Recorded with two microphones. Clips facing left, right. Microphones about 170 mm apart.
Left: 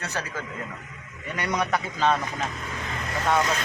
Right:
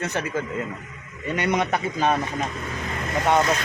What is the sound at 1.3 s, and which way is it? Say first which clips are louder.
Speech: right 3 dB; 20° right (ahead or behind).